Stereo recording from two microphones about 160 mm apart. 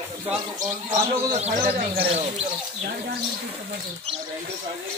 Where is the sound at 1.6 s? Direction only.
70° right (ahead or behind).